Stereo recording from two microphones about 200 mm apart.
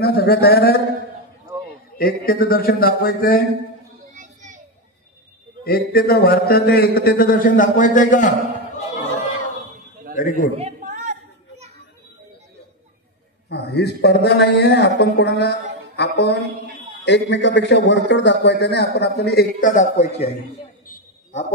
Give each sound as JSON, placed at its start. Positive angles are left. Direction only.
{"t": 0.0, "sound": "a man's voice", "side_deg": 55}
{"t": 2.0, "sound": "a man's voice", "side_deg": 45}
{"t": 4.1, "sound": "children playing", "side_deg": -40}
{"t": 5.6, "sound": "a man's voice", "side_deg": 50}
{"t": 10.1, "sound": "a man's voice", "side_deg": 45}
{"t": 10.6, "sound": "a sound", "side_deg": -35}
{"t": 13.5, "sound": "a man's voice", "side_deg": 55}
{"t": 19.7, "sound": "a man's voice", "side_deg": 35}
{"t": 21.3, "sound": "a man's voice", "side_deg": 35}